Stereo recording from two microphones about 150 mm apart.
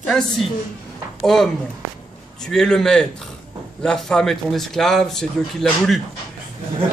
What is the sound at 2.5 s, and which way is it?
A man's voice, 5° left (ahead or behind).